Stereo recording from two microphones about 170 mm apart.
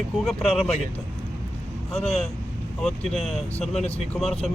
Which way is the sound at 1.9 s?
35° left (ahead or behind).